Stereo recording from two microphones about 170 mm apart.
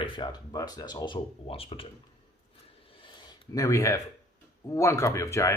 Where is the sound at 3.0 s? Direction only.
25° left (ahead or behind).